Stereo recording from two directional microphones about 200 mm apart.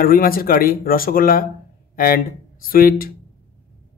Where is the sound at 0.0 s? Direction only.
45° left (ahead or behind).